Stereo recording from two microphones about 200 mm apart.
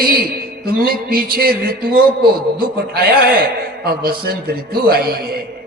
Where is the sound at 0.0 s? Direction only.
50° right (ahead or behind).